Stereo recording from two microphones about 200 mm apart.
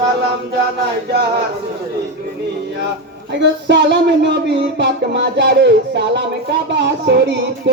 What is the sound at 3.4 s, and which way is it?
Music, 60° right (ahead or behind).